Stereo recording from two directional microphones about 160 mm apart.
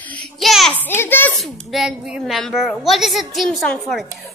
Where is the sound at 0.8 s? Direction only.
15° left (ahead or behind).